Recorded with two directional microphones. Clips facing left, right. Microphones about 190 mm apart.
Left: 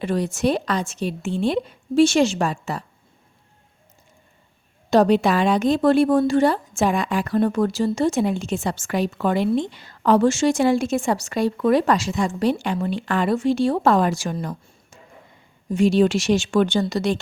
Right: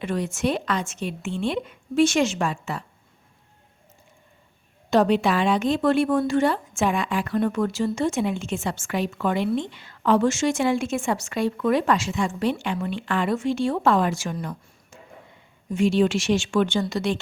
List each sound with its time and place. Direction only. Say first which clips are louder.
0.0 s speech: left 4 dB; 35° left (ahead or behind)
4.9 s speech: left 3 dB; 40° left (ahead or behind)